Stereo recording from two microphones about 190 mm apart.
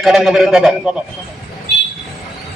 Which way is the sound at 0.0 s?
Centre (ahead or behind).